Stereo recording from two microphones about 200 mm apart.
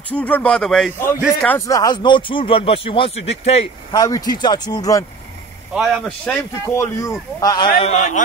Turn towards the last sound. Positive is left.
turn(degrees=25)  # may be behind; listen again after turning